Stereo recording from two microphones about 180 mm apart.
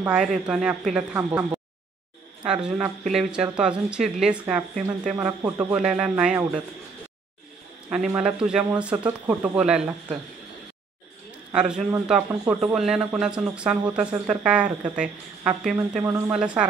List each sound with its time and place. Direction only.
0.0 s a man's voice: 5° right (ahead or behind)
8.2 s a man's voice: 5° right (ahead or behind)
8.9 s speech: 25° right (ahead or behind)
9.3 s speech: 5° right (ahead or behind)
11.5 s a man's voice: 5° right (ahead or behind)